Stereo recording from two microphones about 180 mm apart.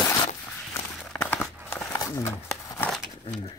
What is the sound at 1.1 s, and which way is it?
Crumpling, 5° left (ahead or behind).